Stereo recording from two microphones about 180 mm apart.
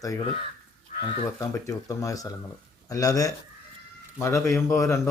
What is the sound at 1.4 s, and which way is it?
Speech, 15° left (ahead or behind).